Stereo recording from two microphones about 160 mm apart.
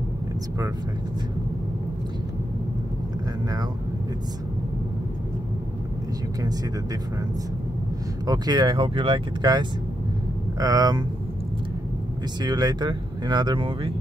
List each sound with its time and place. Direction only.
8.3 s speech: 25° right (ahead or behind)
12.4 s speech: 25° right (ahead or behind)